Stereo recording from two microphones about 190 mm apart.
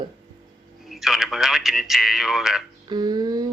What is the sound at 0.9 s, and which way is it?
A man's voice, centre (ahead or behind).